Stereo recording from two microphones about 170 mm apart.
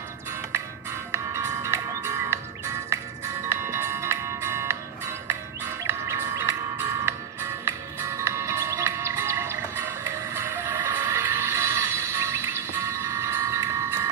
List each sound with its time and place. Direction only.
1.1 s music: 15° right (ahead or behind)